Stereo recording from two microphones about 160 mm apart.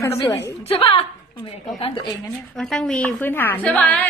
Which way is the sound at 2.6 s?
5° left (ahead or behind).